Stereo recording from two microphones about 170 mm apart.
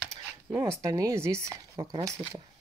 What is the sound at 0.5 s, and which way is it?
Speech, 15° right (ahead or behind).